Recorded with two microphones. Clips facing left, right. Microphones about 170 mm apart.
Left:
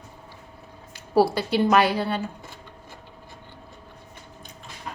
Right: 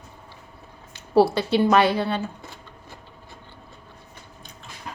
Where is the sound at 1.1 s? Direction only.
10° left (ahead or behind).